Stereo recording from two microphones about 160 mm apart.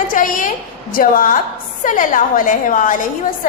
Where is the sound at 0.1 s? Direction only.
55° left (ahead or behind).